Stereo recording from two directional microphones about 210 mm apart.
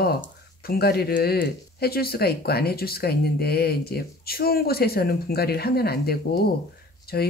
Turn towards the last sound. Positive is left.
turn(degrees=45)  # may be behind; listen again after turning